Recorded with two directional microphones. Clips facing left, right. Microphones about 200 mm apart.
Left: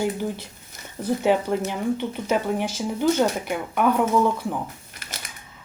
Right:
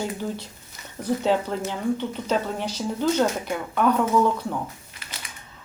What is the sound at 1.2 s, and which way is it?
Speech, 15° left (ahead or behind).